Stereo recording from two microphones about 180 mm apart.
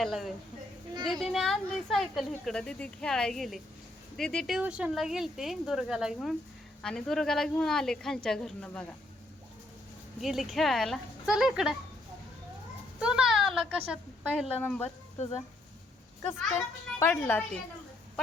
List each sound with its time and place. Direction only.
0.0 s speech: centre (ahead or behind)
10.2 s speech: centre (ahead or behind)
13.0 s a sound: 5° right (ahead or behind)
14.6 s a woman's voice: 10° left (ahead or behind)
16.6 s a woman's voice: 10° left (ahead or behind)